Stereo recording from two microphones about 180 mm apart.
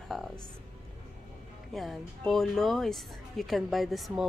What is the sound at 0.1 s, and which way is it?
Music, centre (ahead or behind).